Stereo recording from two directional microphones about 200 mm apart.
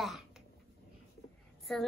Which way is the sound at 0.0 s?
Centre (ahead or behind).